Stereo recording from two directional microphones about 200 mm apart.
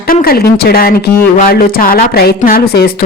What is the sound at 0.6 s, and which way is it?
A woman's voice, 50° left (ahead or behind).